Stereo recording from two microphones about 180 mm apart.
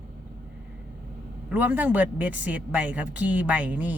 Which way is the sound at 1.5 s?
10° right (ahead or behind).